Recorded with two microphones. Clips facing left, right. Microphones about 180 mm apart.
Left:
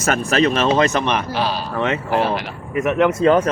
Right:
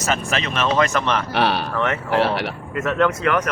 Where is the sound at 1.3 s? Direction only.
65° right (ahead or behind).